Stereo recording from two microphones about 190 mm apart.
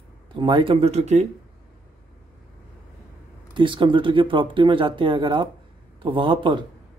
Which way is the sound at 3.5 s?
25° right (ahead or behind).